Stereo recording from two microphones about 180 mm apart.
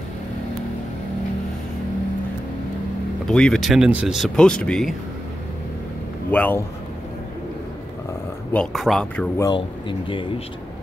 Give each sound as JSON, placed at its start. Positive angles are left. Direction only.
{"t": 3.3, "sound": "speech", "side_deg": 5}
{"t": 6.3, "sound": "speech", "side_deg": 10}
{"t": 8.5, "sound": "speech", "side_deg": 0}
{"t": 9.4, "sound": "speech", "side_deg": 25}